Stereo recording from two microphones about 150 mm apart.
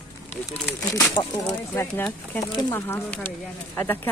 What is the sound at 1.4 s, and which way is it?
Speech, 15° left (ahead or behind).